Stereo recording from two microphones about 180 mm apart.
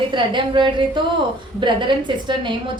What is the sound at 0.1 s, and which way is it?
A woman's voice, 25° right (ahead or behind).